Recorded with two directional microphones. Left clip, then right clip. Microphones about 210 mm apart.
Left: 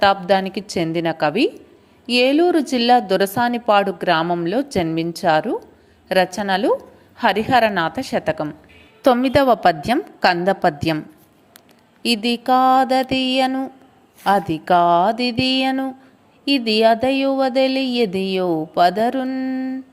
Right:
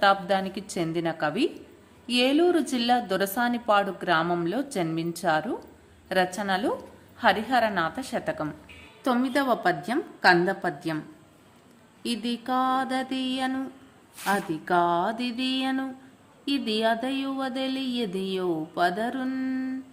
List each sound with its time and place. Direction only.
0.0 s a woman's voice: 30° left (ahead or behind)
12.0 s speech: 35° left (ahead or behind)